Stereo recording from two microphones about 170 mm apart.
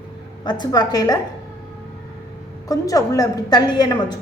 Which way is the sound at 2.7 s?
20° left (ahead or behind).